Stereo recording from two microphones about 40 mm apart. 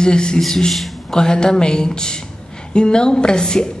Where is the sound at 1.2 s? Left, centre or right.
Centre.